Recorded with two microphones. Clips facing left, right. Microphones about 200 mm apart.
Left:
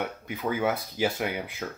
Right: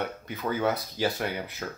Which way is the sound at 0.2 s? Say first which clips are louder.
Left 1 dB; 10° left (ahead or behind).